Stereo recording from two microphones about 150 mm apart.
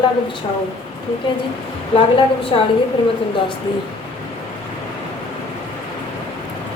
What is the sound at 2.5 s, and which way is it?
Speech, 35° left (ahead or behind).